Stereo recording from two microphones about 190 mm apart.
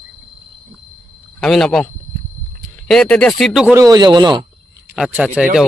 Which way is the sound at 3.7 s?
20° right (ahead or behind).